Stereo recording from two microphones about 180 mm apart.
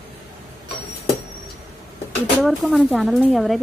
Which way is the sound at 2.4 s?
Centre (ahead or behind).